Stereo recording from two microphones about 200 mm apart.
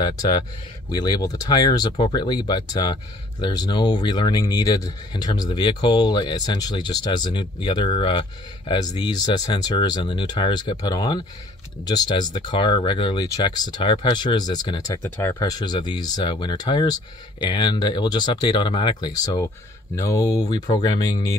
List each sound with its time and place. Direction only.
0.0 s speech: 20° left (ahead or behind)